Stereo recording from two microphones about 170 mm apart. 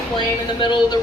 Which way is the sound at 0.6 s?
30° left (ahead or behind).